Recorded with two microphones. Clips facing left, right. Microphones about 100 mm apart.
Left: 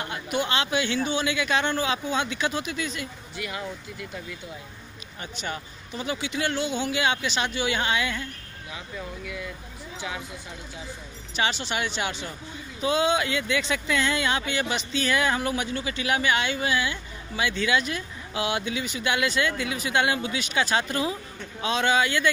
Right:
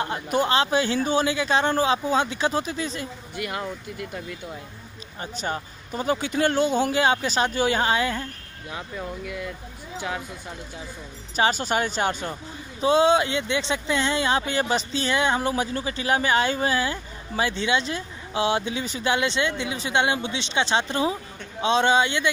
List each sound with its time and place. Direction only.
0.0 s speech: 35° right (ahead or behind)
3.3 s speech: 50° right (ahead or behind)
5.2 s speech: 35° right (ahead or behind)
9.9 s speech: 40° right (ahead or behind)
11.3 s speech: 40° right (ahead or behind)
12.8 s speech: 30° right (ahead or behind)